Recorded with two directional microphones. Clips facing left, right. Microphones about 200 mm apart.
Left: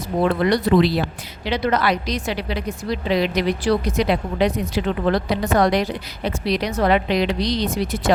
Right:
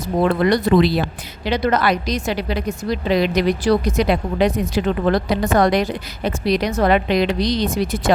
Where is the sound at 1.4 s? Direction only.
45° right (ahead or behind).